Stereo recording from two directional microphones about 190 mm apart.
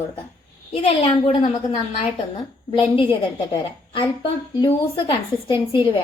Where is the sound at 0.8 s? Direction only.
30° left (ahead or behind).